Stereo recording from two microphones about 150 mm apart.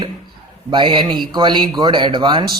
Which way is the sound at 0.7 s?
30° right (ahead or behind).